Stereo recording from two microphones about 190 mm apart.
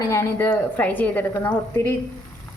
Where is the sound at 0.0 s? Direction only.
15° left (ahead or behind).